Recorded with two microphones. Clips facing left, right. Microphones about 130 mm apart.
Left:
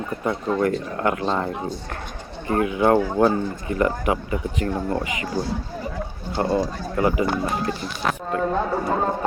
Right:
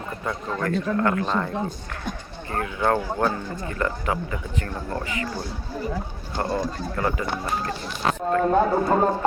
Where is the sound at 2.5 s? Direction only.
15° left (ahead or behind).